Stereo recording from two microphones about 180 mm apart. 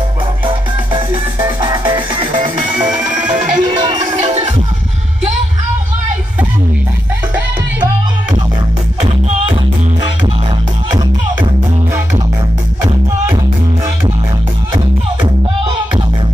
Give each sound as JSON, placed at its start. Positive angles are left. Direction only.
{"t": 0.5, "sound": "music", "side_deg": -25}
{"t": 2.8, "sound": "music", "side_deg": -5}
{"t": 3.1, "sound": "music", "side_deg": -45}